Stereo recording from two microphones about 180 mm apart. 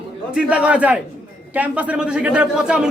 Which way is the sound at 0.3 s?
5° right (ahead or behind).